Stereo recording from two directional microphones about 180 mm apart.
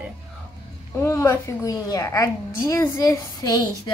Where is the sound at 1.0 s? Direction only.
15° left (ahead or behind).